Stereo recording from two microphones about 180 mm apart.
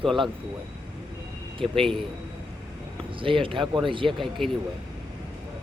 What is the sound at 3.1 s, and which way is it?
Speech, 30° right (ahead or behind).